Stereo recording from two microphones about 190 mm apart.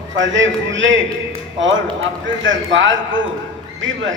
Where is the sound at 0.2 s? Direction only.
80° right.